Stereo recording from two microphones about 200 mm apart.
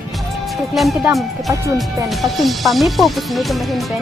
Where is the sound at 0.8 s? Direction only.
Centre (ahead or behind).